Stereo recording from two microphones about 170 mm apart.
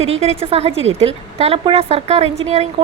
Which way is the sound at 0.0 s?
40° right (ahead or behind).